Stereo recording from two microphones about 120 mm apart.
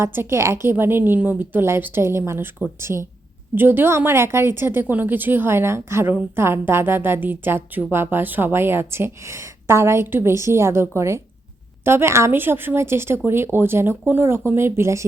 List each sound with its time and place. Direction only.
0.0 s a woman's voice: 20° right (ahead or behind)